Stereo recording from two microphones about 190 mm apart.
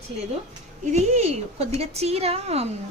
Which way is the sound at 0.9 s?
35° right (ahead or behind).